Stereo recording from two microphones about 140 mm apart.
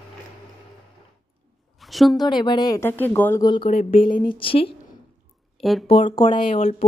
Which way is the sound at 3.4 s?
35° left (ahead or behind).